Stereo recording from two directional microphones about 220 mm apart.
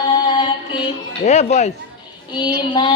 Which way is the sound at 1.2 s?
30° left (ahead or behind).